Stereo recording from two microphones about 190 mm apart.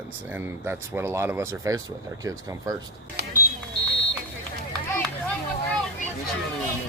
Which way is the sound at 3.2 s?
60° right (ahead or behind).